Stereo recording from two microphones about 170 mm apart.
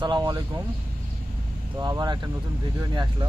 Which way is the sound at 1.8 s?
25° right (ahead or behind).